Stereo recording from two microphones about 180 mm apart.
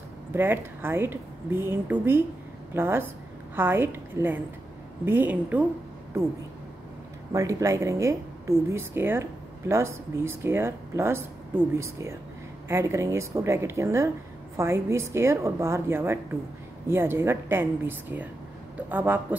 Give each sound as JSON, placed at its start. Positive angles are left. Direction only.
{"t": 0.3, "sound": "a woman's voice", "side_deg": -10}
{"t": 7.3, "sound": "a woman's voice", "side_deg": -15}